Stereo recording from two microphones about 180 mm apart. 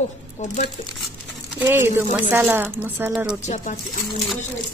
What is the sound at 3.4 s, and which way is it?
Speech, 40° left (ahead or behind).